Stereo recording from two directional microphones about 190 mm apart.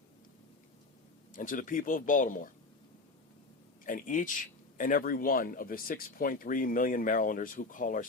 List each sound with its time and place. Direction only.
1.3 s speech: 45° left (ahead or behind)
3.8 s speech: 45° left (ahead or behind)